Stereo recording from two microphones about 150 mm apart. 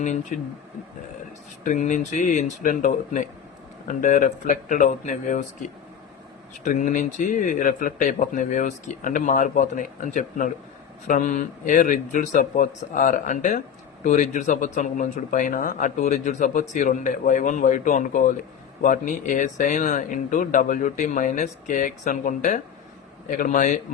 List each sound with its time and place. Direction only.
1.6 s speech: 55° left (ahead or behind)